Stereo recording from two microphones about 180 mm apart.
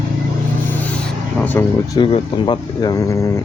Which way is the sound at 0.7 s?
10° left (ahead or behind).